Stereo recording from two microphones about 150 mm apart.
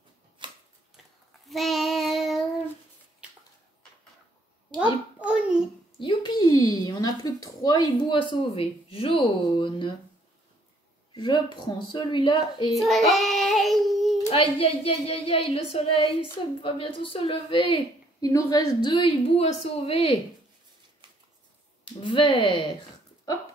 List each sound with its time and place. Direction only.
0.4 s a sound: 35° right (ahead or behind)
1.5 s child singing: centre (ahead or behind)
5.2 s a sound: 5° right (ahead or behind)
5.9 s speech: 30° left (ahead or behind)
11.1 s speech: 30° left (ahead or behind)
12.7 s child singing: centre (ahead or behind)
14.3 s speech: 40° left (ahead or behind)
18.2 s speech: 25° left (ahead or behind); by 20.2 s 40° left (ahead or behind)
22.0 s speech: 35° left (ahead or behind)